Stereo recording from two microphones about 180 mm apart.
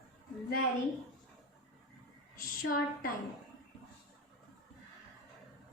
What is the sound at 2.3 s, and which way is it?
Speech, 55° left (ahead or behind).